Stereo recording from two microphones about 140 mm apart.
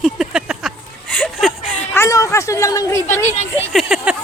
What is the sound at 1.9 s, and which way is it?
Speech, 20° left (ahead or behind).